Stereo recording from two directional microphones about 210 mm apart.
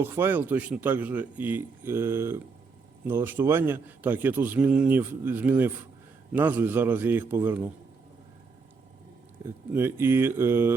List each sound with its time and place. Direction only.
0.0 s a man's voice: 10° right (ahead or behind)
9.7 s a man's voice: 10° right (ahead or behind)